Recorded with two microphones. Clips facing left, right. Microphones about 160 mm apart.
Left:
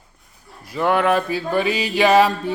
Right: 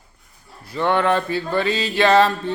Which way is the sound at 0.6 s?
10° left (ahead or behind).